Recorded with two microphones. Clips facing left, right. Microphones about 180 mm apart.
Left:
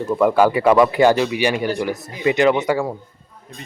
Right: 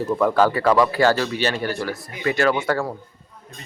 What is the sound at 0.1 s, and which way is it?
Speech, 10° left (ahead or behind).